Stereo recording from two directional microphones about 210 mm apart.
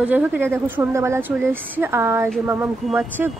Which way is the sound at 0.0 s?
10° right (ahead or behind).